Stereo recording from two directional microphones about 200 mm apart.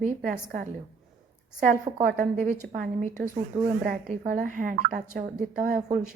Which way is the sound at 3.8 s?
45° right (ahead or behind).